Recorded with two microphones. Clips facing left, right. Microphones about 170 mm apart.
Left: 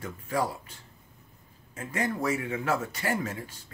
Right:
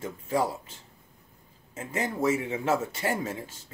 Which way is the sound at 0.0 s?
25° right (ahead or behind).